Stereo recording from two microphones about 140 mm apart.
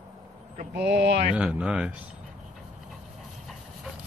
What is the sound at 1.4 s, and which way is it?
Speech, 5° right (ahead or behind).